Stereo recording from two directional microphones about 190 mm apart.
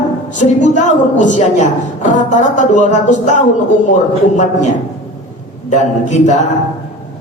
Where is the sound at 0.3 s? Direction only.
40° left (ahead or behind).